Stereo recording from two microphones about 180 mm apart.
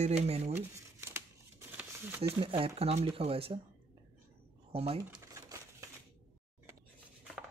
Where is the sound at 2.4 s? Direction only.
30° right (ahead or behind).